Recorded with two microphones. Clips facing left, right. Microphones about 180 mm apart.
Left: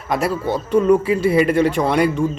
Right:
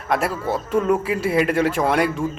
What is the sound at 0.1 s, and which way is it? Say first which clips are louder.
A man's voice: left 2 dB; centre (ahead or behind).